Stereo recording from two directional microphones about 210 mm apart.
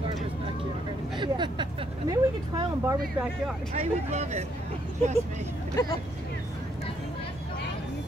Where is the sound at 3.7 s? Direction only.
30° right (ahead or behind).